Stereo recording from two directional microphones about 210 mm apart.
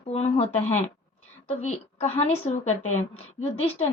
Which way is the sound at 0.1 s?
30° left (ahead or behind).